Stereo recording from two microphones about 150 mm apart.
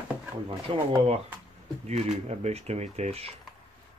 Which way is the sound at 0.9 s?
40° right (ahead or behind).